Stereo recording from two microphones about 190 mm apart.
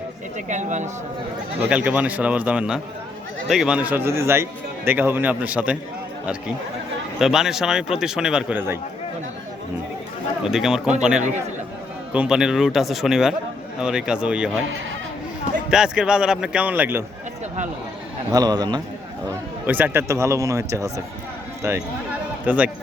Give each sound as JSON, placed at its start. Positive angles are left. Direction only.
{"t": 0.3, "sound": "speech", "side_deg": -40}
{"t": 1.7, "sound": "speech", "side_deg": -5}
{"t": 7.2, "sound": "speech", "side_deg": 0}
{"t": 10.4, "sound": "speech", "side_deg": -5}
{"t": 12.1, "sound": "speech", "side_deg": -5}
{"t": 15.7, "sound": "speech", "side_deg": -5}
{"t": 18.3, "sound": "a man's voice", "side_deg": -20}
{"t": 19.6, "sound": "speech", "side_deg": -10}